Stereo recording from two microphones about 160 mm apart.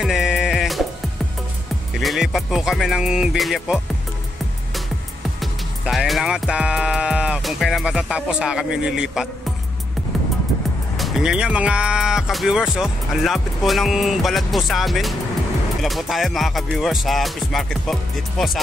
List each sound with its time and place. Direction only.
0.0 s music: centre (ahead or behind)
2.0 s speech: centre (ahead or behind)
5.4 s music: centre (ahead or behind)
11.0 s speech: centre (ahead or behind)